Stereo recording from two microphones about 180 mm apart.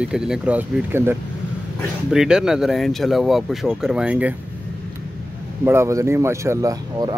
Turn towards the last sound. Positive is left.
turn(degrees=-20)  # may be behind; listen again after turning